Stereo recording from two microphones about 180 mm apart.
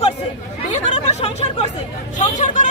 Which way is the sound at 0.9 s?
35° left (ahead or behind).